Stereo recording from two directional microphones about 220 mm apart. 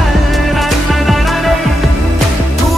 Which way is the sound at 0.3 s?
Centre (ahead or behind).